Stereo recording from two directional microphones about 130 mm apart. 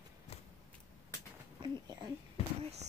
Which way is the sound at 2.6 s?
55° right (ahead or behind).